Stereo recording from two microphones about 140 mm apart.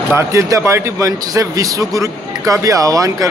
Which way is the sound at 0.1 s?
20° right (ahead or behind).